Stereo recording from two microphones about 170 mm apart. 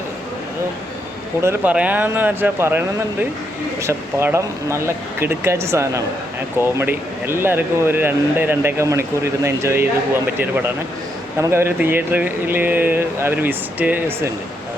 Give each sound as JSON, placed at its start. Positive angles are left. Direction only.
{"t": 1.4, "sound": "speech", "side_deg": -15}